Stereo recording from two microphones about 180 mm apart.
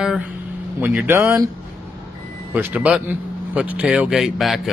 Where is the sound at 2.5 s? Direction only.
10° right (ahead or behind).